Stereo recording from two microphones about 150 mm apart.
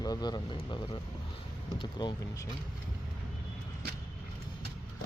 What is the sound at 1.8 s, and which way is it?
Speech, 30° left (ahead or behind).